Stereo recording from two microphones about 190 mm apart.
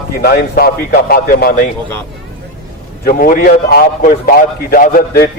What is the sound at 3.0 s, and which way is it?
Speech, 45° left (ahead or behind).